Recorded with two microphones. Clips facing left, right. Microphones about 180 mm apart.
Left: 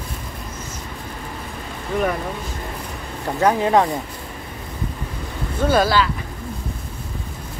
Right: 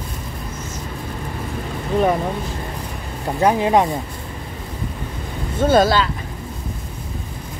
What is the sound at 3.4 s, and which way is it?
Speech, 15° right (ahead or behind).